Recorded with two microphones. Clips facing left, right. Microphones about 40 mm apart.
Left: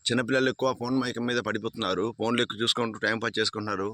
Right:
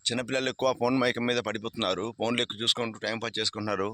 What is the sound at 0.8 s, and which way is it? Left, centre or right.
Speech, centre.